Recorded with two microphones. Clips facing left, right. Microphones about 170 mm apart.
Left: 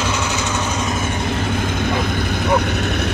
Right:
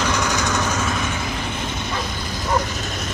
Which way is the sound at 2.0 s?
60° left (ahead or behind).